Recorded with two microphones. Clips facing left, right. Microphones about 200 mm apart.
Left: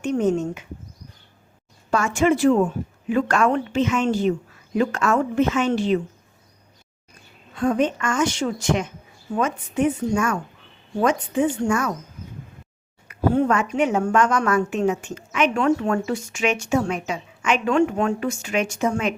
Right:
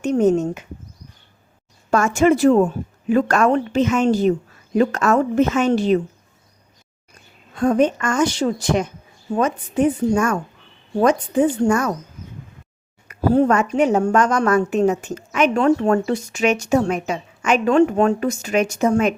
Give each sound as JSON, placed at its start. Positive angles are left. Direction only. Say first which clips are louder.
{"t": 0.0, "sound": "a woman's voice", "louder": "right 4 dB", "side_deg": -40}
{"t": 1.9, "sound": "a woman's voice", "louder": "right 4 dB", "side_deg": -45}
{"t": 7.5, "sound": "a woman's voice", "louder": "right 4 dB", "side_deg": -40}
{"t": 13.1, "sound": "a woman's voice", "louder": "right 4 dB", "side_deg": -40}